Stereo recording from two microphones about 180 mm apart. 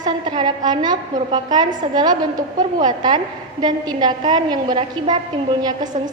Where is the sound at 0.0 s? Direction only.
25° right (ahead or behind).